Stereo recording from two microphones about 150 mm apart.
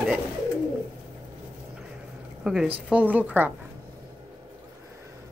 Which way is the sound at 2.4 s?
5° right (ahead or behind).